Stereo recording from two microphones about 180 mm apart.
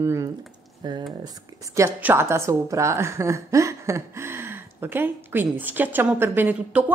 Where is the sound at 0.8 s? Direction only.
25° right (ahead or behind).